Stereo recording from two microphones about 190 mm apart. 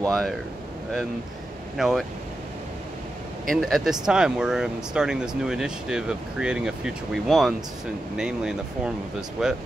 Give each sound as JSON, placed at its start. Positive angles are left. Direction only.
{"t": 0.1, "sound": "speech", "side_deg": 0}
{"t": 1.8, "sound": "speech", "side_deg": 0}
{"t": 3.4, "sound": "speech", "side_deg": 0}